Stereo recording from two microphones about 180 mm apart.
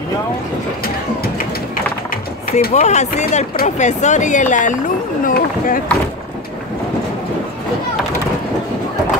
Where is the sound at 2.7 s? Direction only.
40° left (ahead or behind).